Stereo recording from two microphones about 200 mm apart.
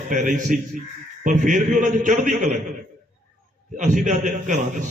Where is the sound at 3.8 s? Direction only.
35° right (ahead or behind).